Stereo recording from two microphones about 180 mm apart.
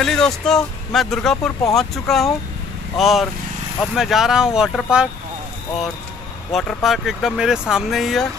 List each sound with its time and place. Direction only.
0.0 s speech: 5° left (ahead or behind)
6.5 s speech: centre (ahead or behind)